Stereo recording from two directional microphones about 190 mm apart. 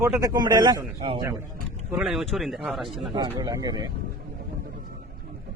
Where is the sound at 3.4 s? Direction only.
20° right (ahead or behind).